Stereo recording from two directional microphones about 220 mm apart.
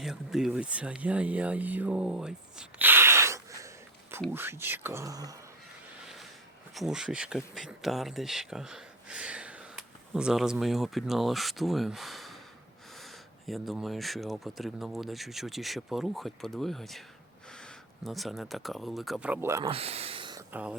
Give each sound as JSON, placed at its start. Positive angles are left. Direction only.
{"t": 0.0, "sound": "speech", "side_deg": 0}
{"t": 6.7, "sound": "speech", "side_deg": 0}
{"t": 19.7, "sound": "a sound", "side_deg": -25}
{"t": 20.5, "sound": "speech", "side_deg": -5}